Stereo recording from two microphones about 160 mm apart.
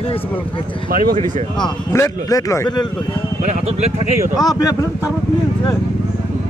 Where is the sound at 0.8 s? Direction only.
55° right (ahead or behind).